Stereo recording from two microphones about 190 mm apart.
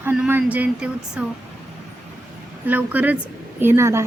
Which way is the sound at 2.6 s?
10° right (ahead or behind).